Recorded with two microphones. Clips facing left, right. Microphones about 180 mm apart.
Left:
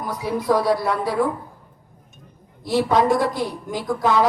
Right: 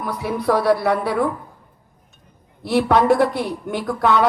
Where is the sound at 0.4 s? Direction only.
65° right (ahead or behind).